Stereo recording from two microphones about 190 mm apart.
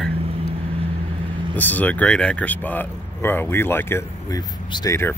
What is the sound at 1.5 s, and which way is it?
Speech, 10° left (ahead or behind).